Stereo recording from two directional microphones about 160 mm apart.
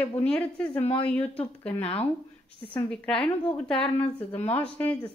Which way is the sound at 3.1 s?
5° left (ahead or behind).